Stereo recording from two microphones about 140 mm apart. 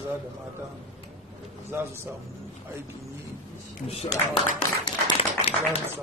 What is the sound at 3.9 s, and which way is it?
Speech, 40° left (ahead or behind).